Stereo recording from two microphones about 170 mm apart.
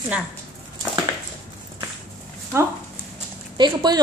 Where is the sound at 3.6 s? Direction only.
25° right (ahead or behind).